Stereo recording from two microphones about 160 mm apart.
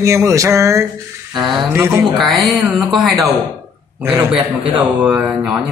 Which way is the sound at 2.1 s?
Centre (ahead or behind).